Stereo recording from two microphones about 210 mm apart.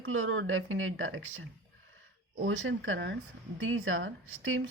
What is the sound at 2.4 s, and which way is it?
A woman's voice, 65° right (ahead or behind).